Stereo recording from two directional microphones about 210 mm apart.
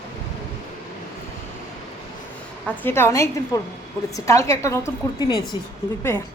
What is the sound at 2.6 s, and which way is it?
A woman's voice, 10° left (ahead or behind).